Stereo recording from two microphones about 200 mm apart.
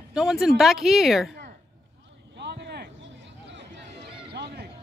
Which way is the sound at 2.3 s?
60° right (ahead or behind).